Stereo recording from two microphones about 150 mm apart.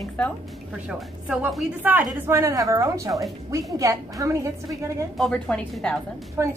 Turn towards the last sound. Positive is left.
turn(degrees=-20)  # may be behind; listen again after turning